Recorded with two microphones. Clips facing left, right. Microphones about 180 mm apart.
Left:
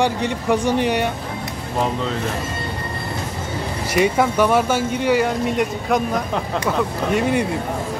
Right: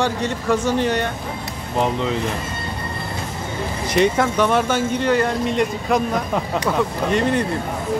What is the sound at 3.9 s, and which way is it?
Speech, 10° left (ahead or behind).